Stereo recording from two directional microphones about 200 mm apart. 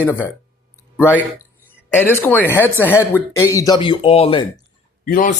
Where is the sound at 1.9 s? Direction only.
10° left (ahead or behind); by 4.5 s 30° left (ahead or behind).